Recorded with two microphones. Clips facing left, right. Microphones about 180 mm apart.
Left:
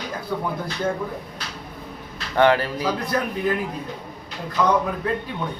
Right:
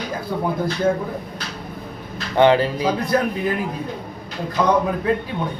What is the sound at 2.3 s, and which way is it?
Speech, 20° right (ahead or behind).